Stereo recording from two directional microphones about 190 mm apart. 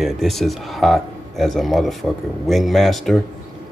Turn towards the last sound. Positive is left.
turn(degrees=0)  # may be behind; listen again after turning